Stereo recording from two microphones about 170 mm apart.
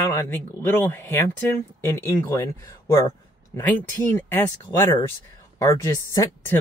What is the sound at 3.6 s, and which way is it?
Speech, 15° left (ahead or behind).